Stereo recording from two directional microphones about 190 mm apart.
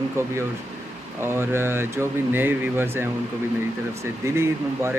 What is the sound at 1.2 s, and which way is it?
Speech, 10° right (ahead or behind).